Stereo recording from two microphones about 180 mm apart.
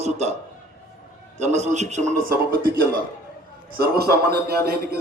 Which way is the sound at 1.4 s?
40° right (ahead or behind).